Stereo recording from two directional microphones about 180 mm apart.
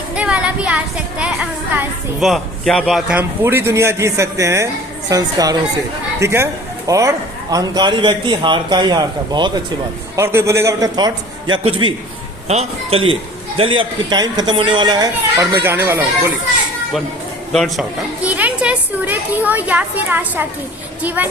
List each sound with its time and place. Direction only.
0.1 s a sound: 5° right (ahead or behind)
2.3 s a man's voice: centre (ahead or behind); by 13.1 s 35° right (ahead or behind)
13.7 s a man's voice: 25° right (ahead or behind)
17.5 s a man's voice: centre (ahead or behind)